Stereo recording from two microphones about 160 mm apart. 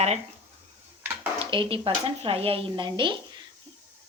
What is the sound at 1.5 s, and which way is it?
Speech, 30° right (ahead or behind).